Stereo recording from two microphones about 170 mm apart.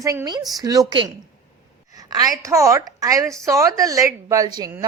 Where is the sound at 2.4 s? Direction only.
20° right (ahead or behind).